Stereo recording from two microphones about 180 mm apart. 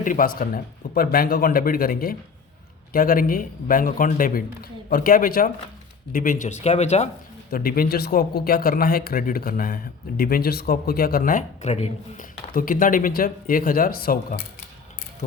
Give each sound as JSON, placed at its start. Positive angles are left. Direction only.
{"t": 0.0, "sound": "speech", "side_deg": 50}
{"t": 7.5, "sound": "speech", "side_deg": 55}